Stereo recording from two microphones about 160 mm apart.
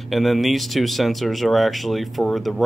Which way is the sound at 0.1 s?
Centre (ahead or behind).